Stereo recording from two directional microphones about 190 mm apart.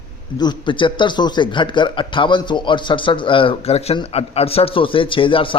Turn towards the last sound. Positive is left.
turn(degrees=25)  # may be behind; listen again after turning